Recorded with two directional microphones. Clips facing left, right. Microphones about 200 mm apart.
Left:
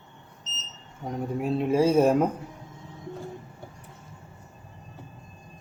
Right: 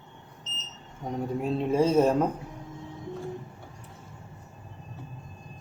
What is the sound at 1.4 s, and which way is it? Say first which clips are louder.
Speech: left 2 dB; 5° left (ahead or behind).